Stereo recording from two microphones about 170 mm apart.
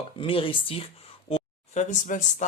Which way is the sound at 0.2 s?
30° left (ahead or behind).